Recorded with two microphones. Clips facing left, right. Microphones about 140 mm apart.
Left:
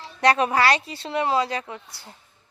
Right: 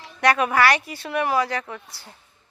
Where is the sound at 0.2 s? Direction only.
30° left (ahead or behind).